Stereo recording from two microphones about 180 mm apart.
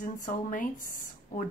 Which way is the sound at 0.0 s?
45° left (ahead or behind).